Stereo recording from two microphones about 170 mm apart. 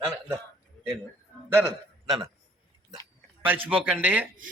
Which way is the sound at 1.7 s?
20° right (ahead or behind).